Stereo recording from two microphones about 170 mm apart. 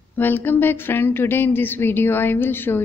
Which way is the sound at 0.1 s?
10° left (ahead or behind).